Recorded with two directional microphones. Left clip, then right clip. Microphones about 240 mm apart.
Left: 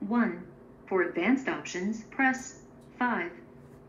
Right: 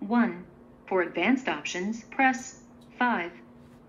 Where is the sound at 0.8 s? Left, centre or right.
Right.